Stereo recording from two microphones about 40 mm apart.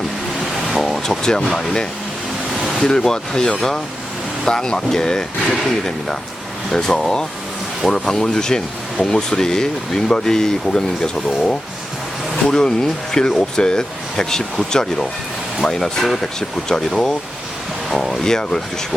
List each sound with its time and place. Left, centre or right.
0.8 s vehicle: centre
1.2 s speech: centre
2.6 s a sound: centre
2.8 s speech: centre